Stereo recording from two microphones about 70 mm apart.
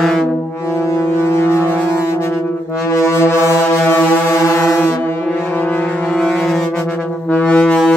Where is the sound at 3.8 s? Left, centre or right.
Left.